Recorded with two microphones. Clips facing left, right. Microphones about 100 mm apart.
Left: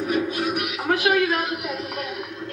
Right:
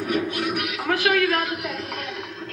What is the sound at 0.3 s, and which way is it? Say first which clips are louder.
Music: left 1 dB; 35° left (ahead or behind).